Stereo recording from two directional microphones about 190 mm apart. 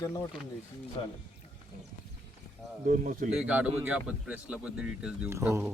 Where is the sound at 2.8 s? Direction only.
45° right (ahead or behind).